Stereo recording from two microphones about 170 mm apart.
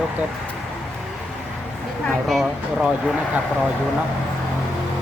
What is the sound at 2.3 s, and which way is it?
Speech, centre (ahead or behind).